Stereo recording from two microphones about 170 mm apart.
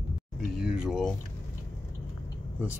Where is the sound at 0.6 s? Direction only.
Centre (ahead or behind).